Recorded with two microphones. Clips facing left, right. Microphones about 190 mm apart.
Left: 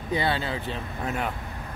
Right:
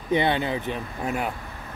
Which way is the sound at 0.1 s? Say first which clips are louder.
Right 4 dB; 20° right (ahead or behind).